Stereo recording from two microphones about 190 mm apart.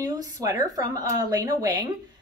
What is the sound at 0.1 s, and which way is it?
Speech, 15° right (ahead or behind).